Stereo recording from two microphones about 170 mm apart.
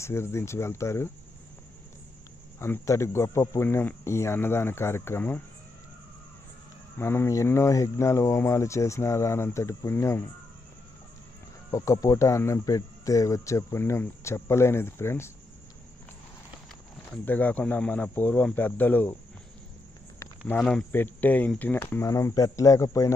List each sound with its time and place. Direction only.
0.0 s speech: 15° left (ahead or behind)
2.6 s speech: 15° left (ahead or behind)
7.0 s speech: 15° left (ahead or behind)
11.7 s speech: 20° left (ahead or behind)
17.1 s speech: 10° left (ahead or behind)
20.5 s speech: 5° left (ahead or behind)